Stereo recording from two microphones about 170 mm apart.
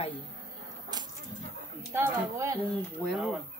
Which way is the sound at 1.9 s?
15° right (ahead or behind).